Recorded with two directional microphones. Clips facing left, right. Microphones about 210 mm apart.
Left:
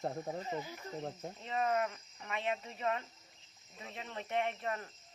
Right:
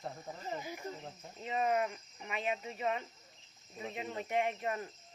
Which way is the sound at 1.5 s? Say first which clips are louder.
Right 1 dB; 15° right (ahead or behind).